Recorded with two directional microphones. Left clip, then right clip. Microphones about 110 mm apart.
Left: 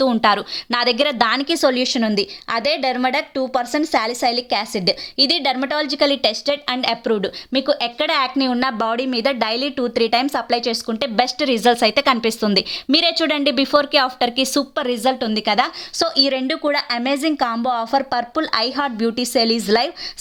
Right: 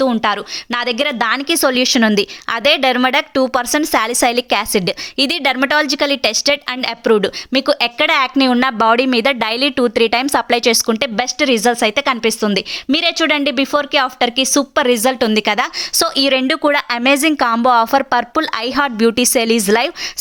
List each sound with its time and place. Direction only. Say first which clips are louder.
0.0 s a woman's voice: even; 10° right (ahead or behind); by 11.1 s 30° right (ahead or behind)
11.2 s a woman's voice: even; 15° right (ahead or behind)
14.5 s a woman's voice: right 7 dB; 30° right (ahead or behind)